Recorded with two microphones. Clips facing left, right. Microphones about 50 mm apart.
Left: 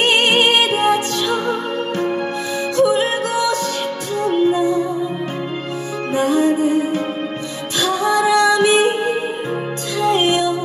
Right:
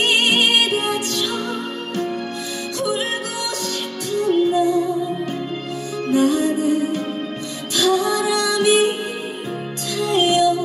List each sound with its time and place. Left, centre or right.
0.0 s music: centre
2.8 s music: centre
4.1 s music: centre
6.1 s music: centre
9.9 s music: centre